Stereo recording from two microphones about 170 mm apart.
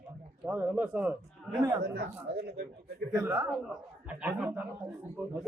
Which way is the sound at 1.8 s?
75° right (ahead or behind).